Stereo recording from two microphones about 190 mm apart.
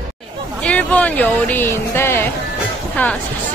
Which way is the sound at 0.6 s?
5° left (ahead or behind).